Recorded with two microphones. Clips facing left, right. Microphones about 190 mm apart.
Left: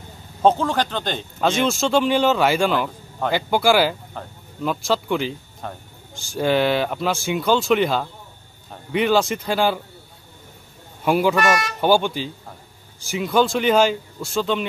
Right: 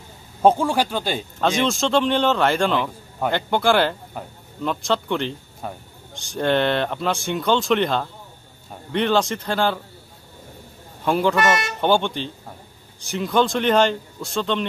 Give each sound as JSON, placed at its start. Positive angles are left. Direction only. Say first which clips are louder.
{"t": 0.4, "sound": "speech", "louder": "right 1 dB", "side_deg": -10}
{"t": 1.4, "sound": "speech", "louder": "left 1 dB", "side_deg": 5}
{"t": 5.6, "sound": "speech", "louder": "right 1 dB", "side_deg": -10}
{"t": 6.3, "sound": "speech", "louder": "left 1 dB", "side_deg": 5}
{"t": 11.1, "sound": "speech", "louder": "left 1 dB", "side_deg": 10}